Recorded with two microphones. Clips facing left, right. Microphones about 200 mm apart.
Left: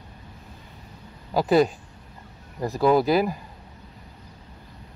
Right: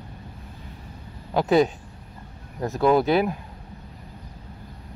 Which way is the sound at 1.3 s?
Centre (ahead or behind).